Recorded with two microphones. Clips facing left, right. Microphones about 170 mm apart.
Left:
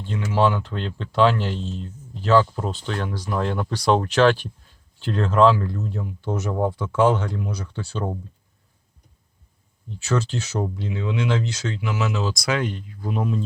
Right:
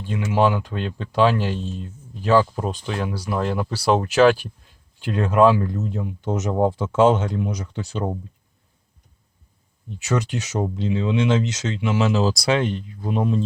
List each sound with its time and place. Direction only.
0.0 s speech: 15° right (ahead or behind)
9.9 s speech: 15° right (ahead or behind)